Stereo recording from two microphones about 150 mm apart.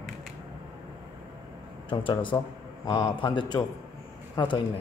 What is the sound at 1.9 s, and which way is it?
A man's voice, 35° left (ahead or behind).